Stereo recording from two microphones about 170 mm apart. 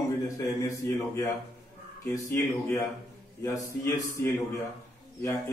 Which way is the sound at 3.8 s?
15° left (ahead or behind).